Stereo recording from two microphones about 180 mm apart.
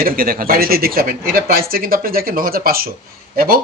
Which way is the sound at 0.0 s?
55° right (ahead or behind).